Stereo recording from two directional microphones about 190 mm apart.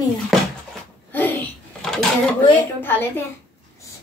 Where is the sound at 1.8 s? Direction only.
Centre (ahead or behind).